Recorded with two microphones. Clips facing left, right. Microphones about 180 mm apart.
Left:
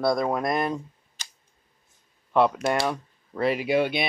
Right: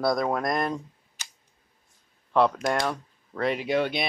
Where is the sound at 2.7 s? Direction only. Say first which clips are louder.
Left 2 dB; 5° left (ahead or behind).